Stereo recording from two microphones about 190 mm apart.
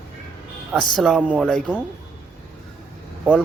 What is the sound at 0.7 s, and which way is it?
Speech, centre (ahead or behind).